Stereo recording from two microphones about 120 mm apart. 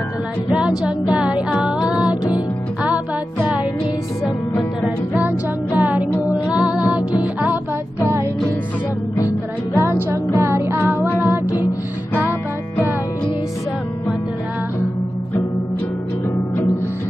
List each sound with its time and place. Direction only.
0.5 s music: 10° right (ahead or behind)
4.8 s music: 10° right (ahead or behind)
8.0 s music: 25° right (ahead or behind)
9.8 s music: 20° right (ahead or behind)